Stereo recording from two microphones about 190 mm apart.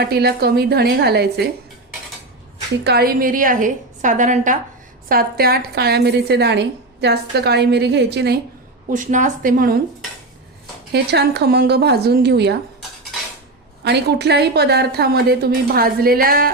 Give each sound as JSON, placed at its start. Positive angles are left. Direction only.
{"t": 0.0, "sound": "a woman's voice", "side_deg": -55}
{"t": 2.8, "sound": "a woman's voice", "side_deg": -55}
{"t": 5.0, "sound": "a woman's voice", "side_deg": -50}
{"t": 8.9, "sound": "a woman's voice", "side_deg": -40}
{"t": 10.9, "sound": "a woman's voice", "side_deg": -60}
{"t": 13.8, "sound": "a woman's voice", "side_deg": -60}